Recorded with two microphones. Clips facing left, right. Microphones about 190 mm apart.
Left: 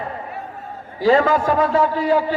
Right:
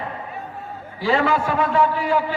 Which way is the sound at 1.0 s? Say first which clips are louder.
Left 5 dB; 45° left (ahead or behind).